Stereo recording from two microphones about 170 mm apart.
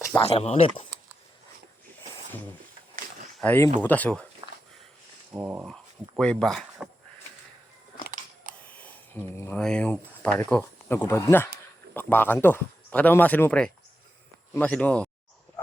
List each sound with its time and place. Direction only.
0.2 s speech: 35° left (ahead or behind)
3.4 s speech: 10° left (ahead or behind)
5.3 s speech: 10° right (ahead or behind)
5.6 s speech: 5° left (ahead or behind)
8.7 s a sound: 10° left (ahead or behind)
9.6 s speech: 5° left (ahead or behind)